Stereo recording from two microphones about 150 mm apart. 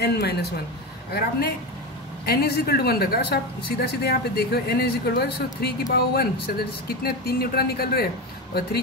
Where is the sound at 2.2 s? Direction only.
90° left.